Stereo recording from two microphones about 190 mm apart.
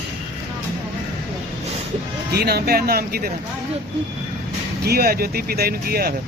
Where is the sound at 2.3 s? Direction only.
55° right (ahead or behind).